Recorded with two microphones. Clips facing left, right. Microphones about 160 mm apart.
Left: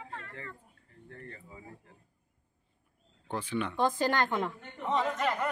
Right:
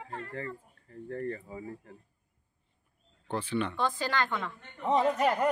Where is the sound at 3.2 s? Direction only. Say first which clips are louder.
Right 2 dB; 10° left (ahead or behind).